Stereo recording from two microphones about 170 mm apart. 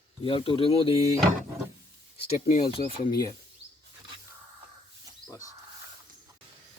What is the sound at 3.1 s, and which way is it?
Speech, 25° left (ahead or behind).